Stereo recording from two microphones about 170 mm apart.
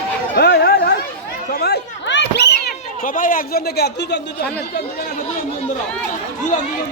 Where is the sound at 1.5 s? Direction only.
70° left (ahead or behind).